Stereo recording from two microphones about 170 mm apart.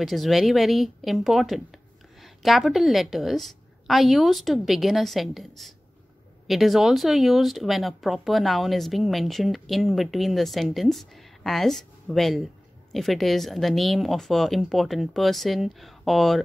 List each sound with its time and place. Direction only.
0.0 s speech: centre (ahead or behind)